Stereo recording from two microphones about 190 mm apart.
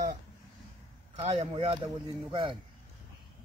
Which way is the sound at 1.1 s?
30° right (ahead or behind).